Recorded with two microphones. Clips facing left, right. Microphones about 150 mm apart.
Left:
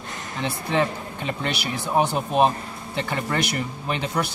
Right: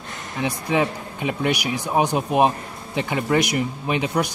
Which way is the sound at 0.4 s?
15° right (ahead or behind).